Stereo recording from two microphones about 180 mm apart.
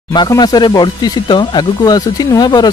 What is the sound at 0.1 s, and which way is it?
Speech, 25° left (ahead or behind).